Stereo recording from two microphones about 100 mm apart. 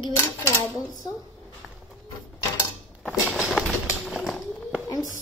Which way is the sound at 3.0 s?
10° left (ahead or behind).